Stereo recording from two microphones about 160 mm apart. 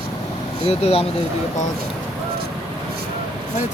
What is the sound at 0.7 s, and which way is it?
Speech, 40° left (ahead or behind).